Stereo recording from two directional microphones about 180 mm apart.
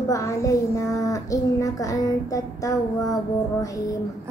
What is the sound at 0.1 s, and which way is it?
A child's voice, 15° left (ahead or behind).